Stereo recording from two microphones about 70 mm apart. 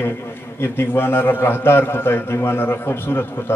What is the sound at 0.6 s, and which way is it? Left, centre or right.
A man's voice, left.